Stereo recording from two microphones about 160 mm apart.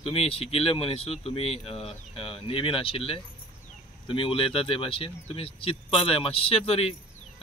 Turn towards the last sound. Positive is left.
turn(degrees=40)  # may be behind; listen again after turning